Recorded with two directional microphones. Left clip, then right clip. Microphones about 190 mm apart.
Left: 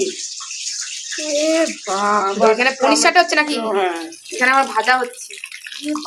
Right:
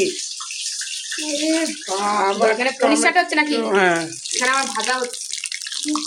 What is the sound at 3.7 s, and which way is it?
Speech, 50° right (ahead or behind).